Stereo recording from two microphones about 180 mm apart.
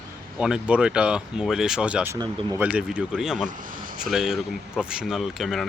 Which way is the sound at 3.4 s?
45° right (ahead or behind).